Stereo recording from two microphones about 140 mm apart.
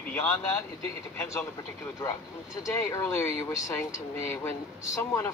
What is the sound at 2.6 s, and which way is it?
Speech, 20° left (ahead or behind).